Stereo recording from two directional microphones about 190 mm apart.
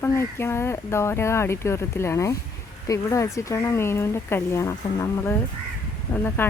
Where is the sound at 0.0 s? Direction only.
10° left (ahead or behind).